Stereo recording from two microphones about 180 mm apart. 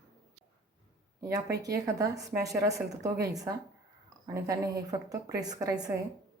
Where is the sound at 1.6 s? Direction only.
20° right (ahead or behind).